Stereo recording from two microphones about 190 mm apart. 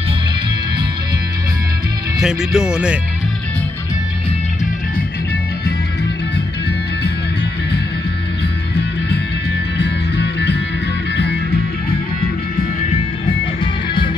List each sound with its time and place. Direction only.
2.1 s speech: 5° right (ahead or behind)
9.8 s music: 60° left (ahead or behind)